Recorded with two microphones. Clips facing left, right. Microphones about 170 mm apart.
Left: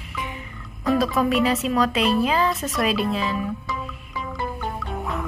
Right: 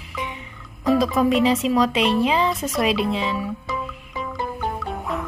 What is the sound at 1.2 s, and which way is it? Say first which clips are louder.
A woman's voice: right 3 dB; 25° right (ahead or behind).